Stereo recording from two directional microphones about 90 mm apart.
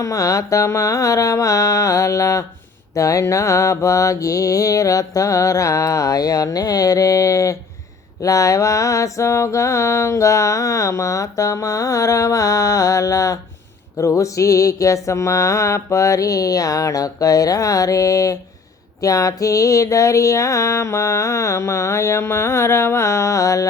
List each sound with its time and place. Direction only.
0.0 s mantra: 40° left (ahead or behind)